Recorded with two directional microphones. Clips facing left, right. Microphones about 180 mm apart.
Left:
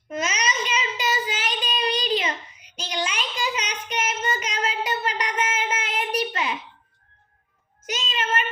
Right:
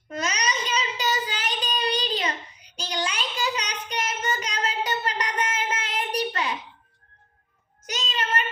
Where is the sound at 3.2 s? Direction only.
10° left (ahead or behind).